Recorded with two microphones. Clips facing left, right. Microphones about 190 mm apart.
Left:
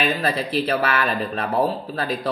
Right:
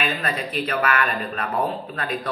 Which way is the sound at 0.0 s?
35° left (ahead or behind).